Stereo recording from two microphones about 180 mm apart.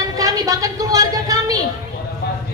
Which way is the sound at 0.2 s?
20° right (ahead or behind).